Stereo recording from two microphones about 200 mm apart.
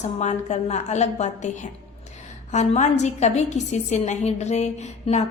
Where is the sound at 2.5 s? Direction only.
35° left (ahead or behind).